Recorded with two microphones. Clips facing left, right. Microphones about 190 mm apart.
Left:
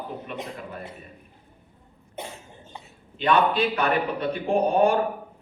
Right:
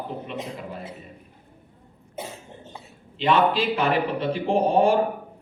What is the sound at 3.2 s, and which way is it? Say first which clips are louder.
Speech: right 1 dB; 25° right (ahead or behind).